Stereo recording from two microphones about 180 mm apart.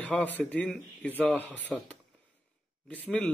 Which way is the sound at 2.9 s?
5° left (ahead or behind).